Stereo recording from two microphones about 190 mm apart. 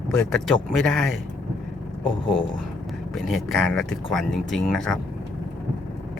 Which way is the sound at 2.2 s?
25° left (ahead or behind).